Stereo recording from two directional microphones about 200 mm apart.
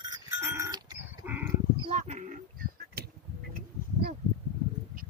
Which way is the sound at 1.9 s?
40° right (ahead or behind).